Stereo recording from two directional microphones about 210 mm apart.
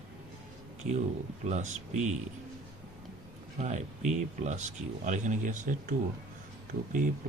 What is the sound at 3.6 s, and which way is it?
Speech, 35° right (ahead or behind).